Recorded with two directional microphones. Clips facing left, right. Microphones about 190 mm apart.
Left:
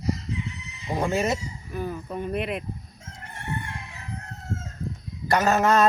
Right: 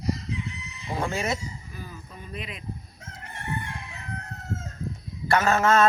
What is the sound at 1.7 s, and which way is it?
Speech, 55° left (ahead or behind).